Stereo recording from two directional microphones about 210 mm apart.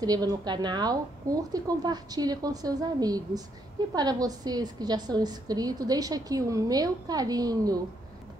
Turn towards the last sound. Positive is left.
turn(degrees=-20)  # may be behind; listen again after turning